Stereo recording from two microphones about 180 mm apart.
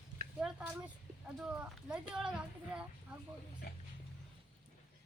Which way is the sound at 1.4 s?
10° right (ahead or behind).